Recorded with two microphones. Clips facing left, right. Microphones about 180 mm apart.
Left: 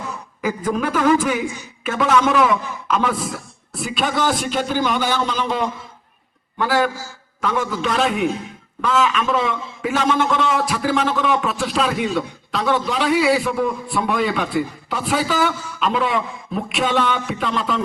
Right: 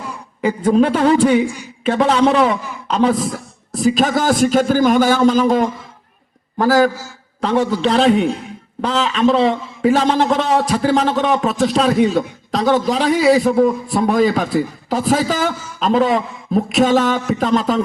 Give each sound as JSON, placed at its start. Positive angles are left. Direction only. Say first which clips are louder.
{"t": 0.4, "sound": "a man's voice", "louder": "right 8 dB", "side_deg": -25}